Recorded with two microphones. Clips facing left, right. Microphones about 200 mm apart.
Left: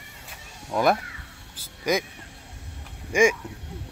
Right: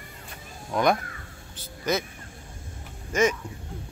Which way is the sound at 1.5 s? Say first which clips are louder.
Left 2 dB; 10° left (ahead or behind).